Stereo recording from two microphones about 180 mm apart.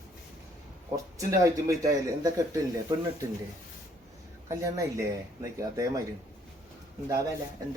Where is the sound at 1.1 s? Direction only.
15° right (ahead or behind).